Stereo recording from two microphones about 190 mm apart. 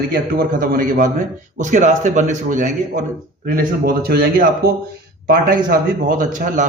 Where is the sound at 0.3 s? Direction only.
50° right (ahead or behind).